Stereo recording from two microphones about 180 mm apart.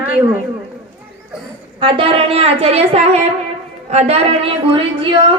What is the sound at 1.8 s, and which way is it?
A woman's voice, 30° right (ahead or behind).